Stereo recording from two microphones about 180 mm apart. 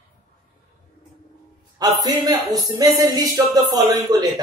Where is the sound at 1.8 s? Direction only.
20° right (ahead or behind).